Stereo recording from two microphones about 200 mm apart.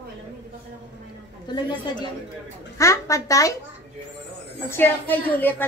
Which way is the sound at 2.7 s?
15° left (ahead or behind).